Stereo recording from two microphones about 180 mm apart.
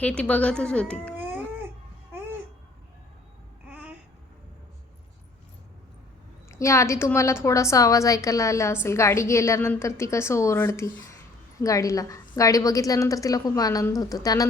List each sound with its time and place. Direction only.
0.0 s a woman's voice: 5° left (ahead or behind)
3.7 s babbling: 5° right (ahead or behind)
6.5 s a woman's voice: 15° left (ahead or behind)